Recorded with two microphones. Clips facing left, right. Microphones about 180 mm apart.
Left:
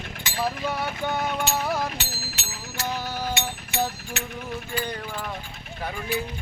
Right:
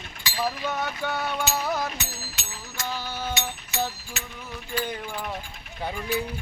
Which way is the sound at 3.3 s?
60° left (ahead or behind).